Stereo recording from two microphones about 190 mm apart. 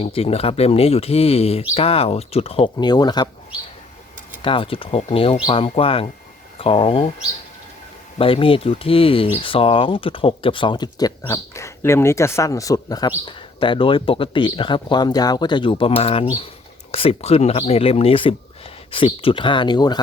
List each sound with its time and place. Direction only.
0.0 s speech: 30° left (ahead or behind)
4.4 s speech: 25° left (ahead or behind)
8.2 s speech: 30° left (ahead or behind)